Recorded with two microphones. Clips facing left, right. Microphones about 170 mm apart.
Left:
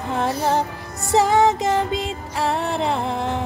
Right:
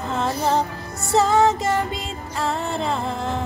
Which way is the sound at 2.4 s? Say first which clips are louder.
Left 2 dB; 75° left (ahead or behind).